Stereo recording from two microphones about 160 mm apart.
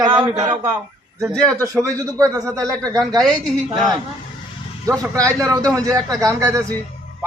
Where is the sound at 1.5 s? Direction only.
15° right (ahead or behind).